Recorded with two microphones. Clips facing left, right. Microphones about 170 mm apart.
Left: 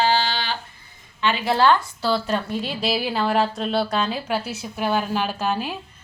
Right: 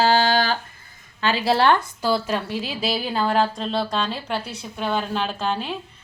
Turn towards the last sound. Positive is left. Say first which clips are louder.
# left 1 dB
turn(degrees=5)  # may be behind; listen again after turning